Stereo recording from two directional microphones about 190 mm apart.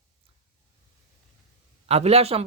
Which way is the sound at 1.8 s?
35° right (ahead or behind).